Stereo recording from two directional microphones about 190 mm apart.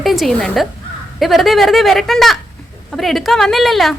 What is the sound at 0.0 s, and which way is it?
A woman's voice, centre (ahead or behind).